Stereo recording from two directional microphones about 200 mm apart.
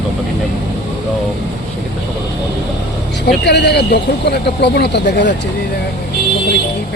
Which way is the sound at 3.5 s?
60° left (ahead or behind).